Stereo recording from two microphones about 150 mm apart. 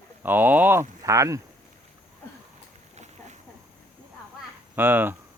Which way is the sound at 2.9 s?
50° right (ahead or behind).